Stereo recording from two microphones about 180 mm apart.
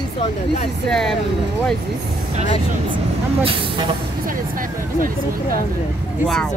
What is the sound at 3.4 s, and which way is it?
Speech, 30° right (ahead or behind).